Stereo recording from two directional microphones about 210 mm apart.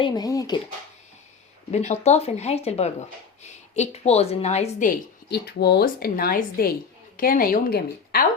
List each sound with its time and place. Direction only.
0.0 s speech: 20° left (ahead or behind)
1.7 s speech: 30° left (ahead or behind)
5.3 s a woman's voice: 50° left (ahead or behind)